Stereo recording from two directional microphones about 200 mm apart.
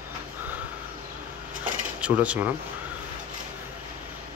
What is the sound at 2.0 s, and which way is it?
Speech, 5° right (ahead or behind).